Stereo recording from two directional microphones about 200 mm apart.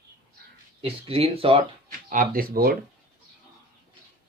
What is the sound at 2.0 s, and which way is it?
Speech, 45° right (ahead or behind).